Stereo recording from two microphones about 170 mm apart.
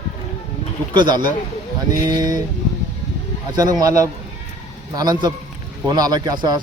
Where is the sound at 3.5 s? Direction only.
20° right (ahead or behind).